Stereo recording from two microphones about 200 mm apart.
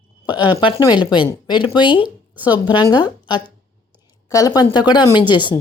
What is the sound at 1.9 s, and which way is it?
Speech, 10° right (ahead or behind).